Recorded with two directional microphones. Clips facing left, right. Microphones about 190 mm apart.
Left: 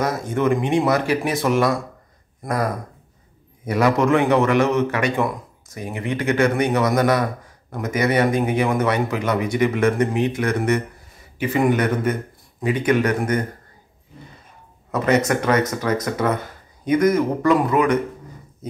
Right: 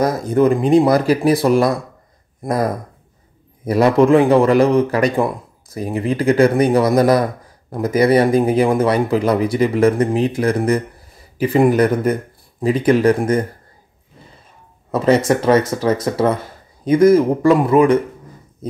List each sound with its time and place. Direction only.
0.0 s a man's voice: 35° right (ahead or behind)
14.9 s speech: 30° right (ahead or behind)